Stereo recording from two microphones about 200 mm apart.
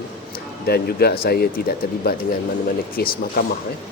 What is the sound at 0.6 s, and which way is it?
Speech, 50° left (ahead or behind).